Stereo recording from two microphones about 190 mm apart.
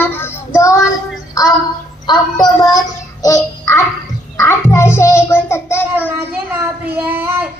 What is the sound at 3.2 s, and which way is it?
Music, 15° left (ahead or behind).